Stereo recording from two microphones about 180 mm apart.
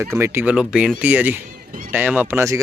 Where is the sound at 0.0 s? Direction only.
15° right (ahead or behind).